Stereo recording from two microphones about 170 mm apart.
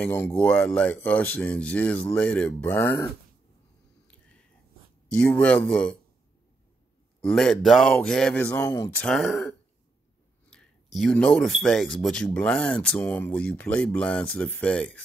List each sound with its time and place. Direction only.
0.0 s speech: 10° left (ahead or behind)
5.1 s speech: 10° left (ahead or behind)
7.2 s a man's voice: centre (ahead or behind)
8.5 s speech: 20° left (ahead or behind)
9.0 s a man's voice: centre (ahead or behind)
10.5 s speech: centre (ahead or behind)